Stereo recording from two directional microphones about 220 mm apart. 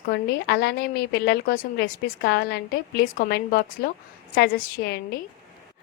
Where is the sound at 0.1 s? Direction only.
50° left (ahead or behind).